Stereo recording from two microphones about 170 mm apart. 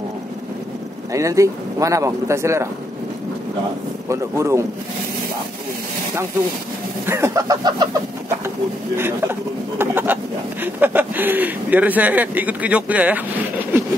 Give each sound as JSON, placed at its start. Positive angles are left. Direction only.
{"t": 1.1, "sound": "speech", "side_deg": -20}
{"t": 4.1, "sound": "speech", "side_deg": -15}
{"t": 7.1, "sound": "a sound", "side_deg": -15}
{"t": 8.9, "sound": "speech", "side_deg": -15}